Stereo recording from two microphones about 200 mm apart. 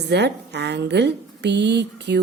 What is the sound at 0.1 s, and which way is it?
A woman's voice, 55° right (ahead or behind).